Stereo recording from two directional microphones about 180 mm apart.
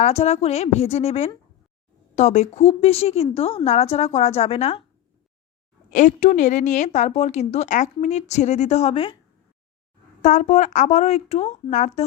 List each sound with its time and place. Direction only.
0.0 s a woman's voice: 35° left (ahead or behind)
5.9 s a woman's voice: 45° left (ahead or behind)
10.2 s a woman's voice: 40° left (ahead or behind)